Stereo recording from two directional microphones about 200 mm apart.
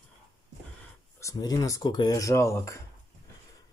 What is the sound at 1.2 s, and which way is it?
Speech, 15° left (ahead or behind).